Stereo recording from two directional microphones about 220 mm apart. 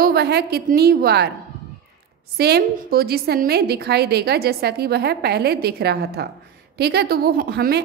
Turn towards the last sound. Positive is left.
turn(degrees=-45)  # may be behind; listen again after turning